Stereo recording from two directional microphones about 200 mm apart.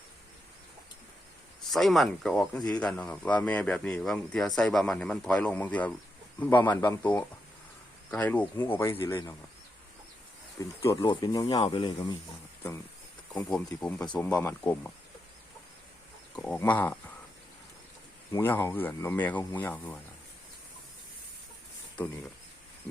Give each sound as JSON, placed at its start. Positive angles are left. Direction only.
{"t": 1.7, "sound": "speech", "side_deg": 0}
{"t": 10.8, "sound": "speech", "side_deg": 15}
{"t": 13.3, "sound": "speech", "side_deg": 5}
{"t": 16.3, "sound": "speech", "side_deg": 5}
{"t": 18.3, "sound": "speech", "side_deg": 15}